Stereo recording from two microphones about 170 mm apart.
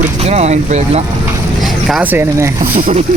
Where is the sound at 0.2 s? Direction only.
40° right (ahead or behind).